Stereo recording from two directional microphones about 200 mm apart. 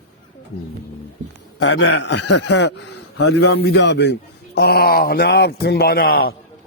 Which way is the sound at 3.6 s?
55° left (ahead or behind).